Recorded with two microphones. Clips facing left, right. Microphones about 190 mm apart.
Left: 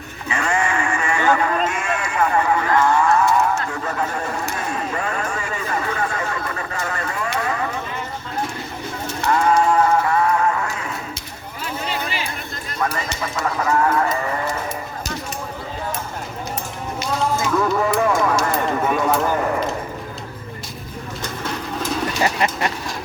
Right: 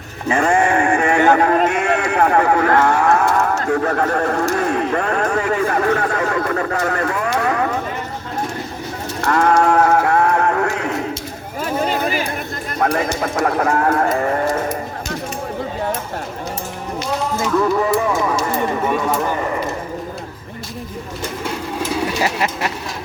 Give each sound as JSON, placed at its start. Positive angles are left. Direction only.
{"t": 0.3, "sound": "sheep", "side_deg": -50}
{"t": 3.7, "sound": "speech", "side_deg": -60}
{"t": 7.3, "sound": "a sound", "side_deg": -60}
{"t": 9.2, "sound": "sheep", "side_deg": -60}
{"t": 11.6, "sound": "a sound", "side_deg": -50}
{"t": 13.1, "sound": "bird", "side_deg": -60}
{"t": 17.6, "sound": "a sound", "side_deg": -5}
{"t": 19.2, "sound": "speech", "side_deg": 0}
{"t": 21.4, "sound": "bird", "side_deg": -10}